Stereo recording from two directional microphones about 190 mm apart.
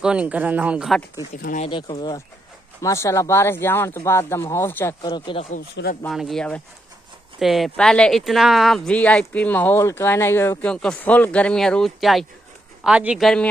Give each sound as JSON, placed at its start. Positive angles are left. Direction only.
{"t": 0.0, "sound": "speech", "side_deg": -5}
{"t": 1.3, "sound": "speech", "side_deg": 45}
{"t": 1.7, "sound": "speech", "side_deg": 25}
{"t": 6.0, "sound": "speech", "side_deg": 0}